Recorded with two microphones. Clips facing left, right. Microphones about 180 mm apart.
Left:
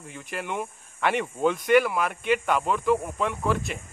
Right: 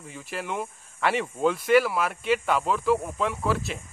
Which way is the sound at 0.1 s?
Centre (ahead or behind).